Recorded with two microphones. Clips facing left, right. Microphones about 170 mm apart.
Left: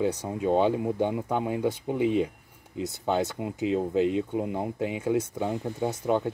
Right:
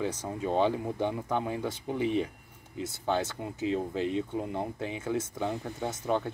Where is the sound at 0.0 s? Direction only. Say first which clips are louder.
Left 5 dB; 15° left (ahead or behind).